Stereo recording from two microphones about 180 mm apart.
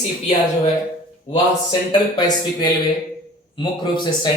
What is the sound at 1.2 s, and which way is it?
Speech, 25° left (ahead or behind).